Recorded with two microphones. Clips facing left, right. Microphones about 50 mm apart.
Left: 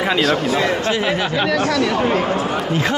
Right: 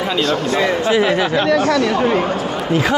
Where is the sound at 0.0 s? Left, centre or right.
Centre.